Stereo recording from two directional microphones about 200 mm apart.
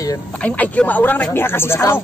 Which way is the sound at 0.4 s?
5° left (ahead or behind).